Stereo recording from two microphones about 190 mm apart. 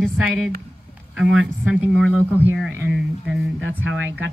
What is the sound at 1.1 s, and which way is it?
Speech, 5° right (ahead or behind).